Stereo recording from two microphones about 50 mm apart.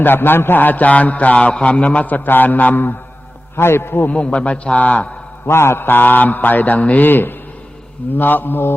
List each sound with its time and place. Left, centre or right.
0.0 s a man's voice: left
3.5 s a man's voice: left
4.1 s a man's voice: left
5.5 s a man's voice: left
7.1 s a man's voice: left